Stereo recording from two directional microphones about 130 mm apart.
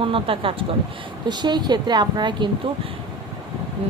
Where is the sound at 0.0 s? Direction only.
45° right (ahead or behind).